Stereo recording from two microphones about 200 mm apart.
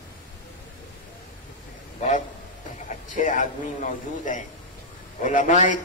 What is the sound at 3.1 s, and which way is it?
A man's voice, 40° left (ahead or behind).